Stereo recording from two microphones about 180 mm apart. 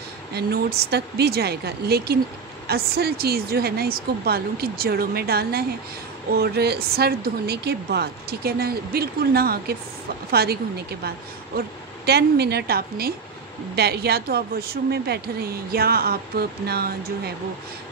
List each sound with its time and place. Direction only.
0.3 s a woman's voice: 60° right (ahead or behind)